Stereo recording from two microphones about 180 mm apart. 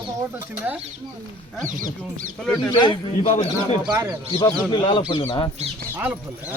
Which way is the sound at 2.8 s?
25° left (ahead or behind).